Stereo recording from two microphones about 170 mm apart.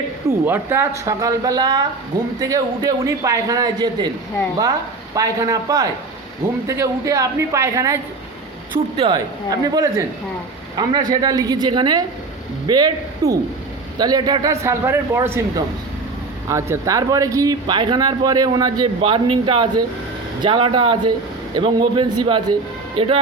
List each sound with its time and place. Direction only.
0.3 s speech: 15° right (ahead or behind)
5.1 s a man's voice: 20° right (ahead or behind)
9.0 s a man's voice: 25° right (ahead or behind)